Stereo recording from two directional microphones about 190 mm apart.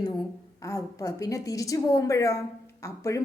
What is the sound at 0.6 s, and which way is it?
A woman's voice, 15° left (ahead or behind).